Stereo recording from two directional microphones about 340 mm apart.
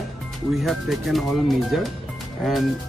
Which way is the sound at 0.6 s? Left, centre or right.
Centre.